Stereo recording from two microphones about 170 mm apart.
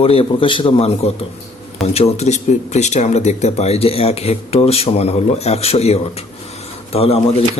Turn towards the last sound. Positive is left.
turn(degrees=35)  # may be behind; listen again after turning